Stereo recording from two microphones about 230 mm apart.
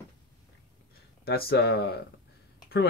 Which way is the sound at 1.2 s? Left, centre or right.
Left.